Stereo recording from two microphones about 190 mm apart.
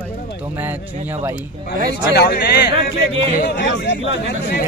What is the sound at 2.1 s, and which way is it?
Speech, 60° left (ahead or behind).